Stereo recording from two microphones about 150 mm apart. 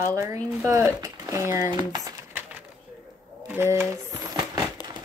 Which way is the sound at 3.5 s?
15° right (ahead or behind).